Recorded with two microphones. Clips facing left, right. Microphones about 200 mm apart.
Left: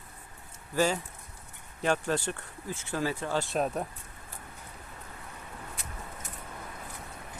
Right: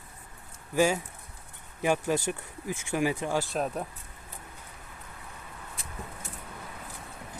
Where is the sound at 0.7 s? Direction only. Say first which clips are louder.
Right 3 dB; 10° right (ahead or behind).